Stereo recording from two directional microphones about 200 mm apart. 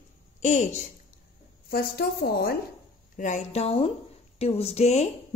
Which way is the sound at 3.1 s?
40° left (ahead or behind).